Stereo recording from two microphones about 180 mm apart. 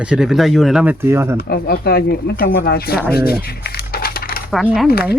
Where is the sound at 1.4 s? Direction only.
55° left (ahead or behind).